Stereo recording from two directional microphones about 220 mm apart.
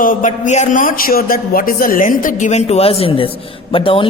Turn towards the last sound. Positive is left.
turn(degrees=25)  # may be behind; listen again after turning